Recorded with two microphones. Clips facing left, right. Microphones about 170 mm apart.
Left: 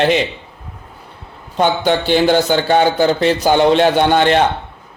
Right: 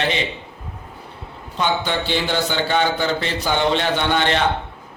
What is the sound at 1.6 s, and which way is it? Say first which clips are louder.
A man's voice: left 7 dB; 50° left (ahead or behind).